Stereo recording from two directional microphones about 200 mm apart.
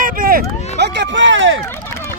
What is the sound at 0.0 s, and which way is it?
Vehicle, 45° right (ahead or behind).